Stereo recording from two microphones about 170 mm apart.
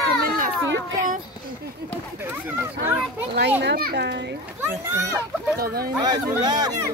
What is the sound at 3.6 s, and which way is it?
Speech, 75° right (ahead or behind).